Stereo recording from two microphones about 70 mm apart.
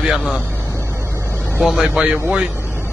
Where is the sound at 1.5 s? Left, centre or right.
Centre.